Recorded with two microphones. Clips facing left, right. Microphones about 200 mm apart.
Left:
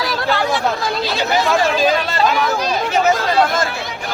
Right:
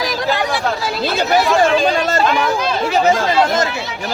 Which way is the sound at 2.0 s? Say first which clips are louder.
Right 4 dB; 45° right (ahead or behind).